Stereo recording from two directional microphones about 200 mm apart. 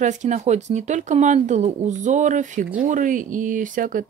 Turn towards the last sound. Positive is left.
turn(degrees=-40)  # may be behind; listen again after turning